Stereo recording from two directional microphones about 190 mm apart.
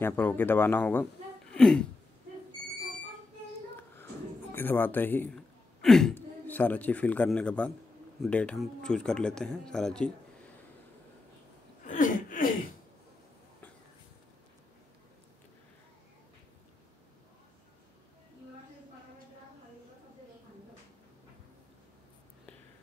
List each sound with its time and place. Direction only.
0.0 s speech: 10° left (ahead or behind)
1.5 s throat clearing: 5° left (ahead or behind)
3.9 s speech: 10° left (ahead or behind)
11.8 s a sound: 40° left (ahead or behind)